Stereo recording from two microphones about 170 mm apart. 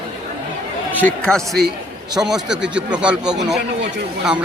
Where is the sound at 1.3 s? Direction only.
5° left (ahead or behind).